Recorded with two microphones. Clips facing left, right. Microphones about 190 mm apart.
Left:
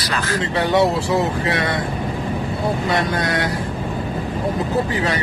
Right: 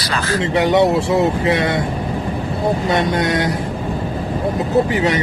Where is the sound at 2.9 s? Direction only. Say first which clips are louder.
Right 4 dB; 25° right (ahead or behind).